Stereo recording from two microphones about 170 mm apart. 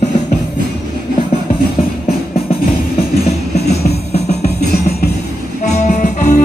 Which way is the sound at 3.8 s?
70° left (ahead or behind).